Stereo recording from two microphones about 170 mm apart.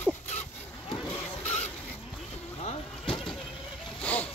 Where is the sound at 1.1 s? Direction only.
10° left (ahead or behind).